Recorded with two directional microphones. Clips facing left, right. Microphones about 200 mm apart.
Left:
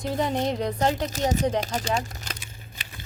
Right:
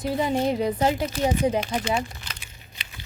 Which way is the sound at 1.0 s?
40° left (ahead or behind).